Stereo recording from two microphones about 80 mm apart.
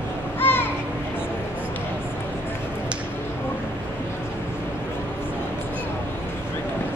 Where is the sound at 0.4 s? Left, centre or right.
Left.